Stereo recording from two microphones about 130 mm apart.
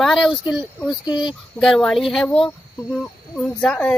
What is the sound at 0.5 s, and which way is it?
Speech, 10° right (ahead or behind).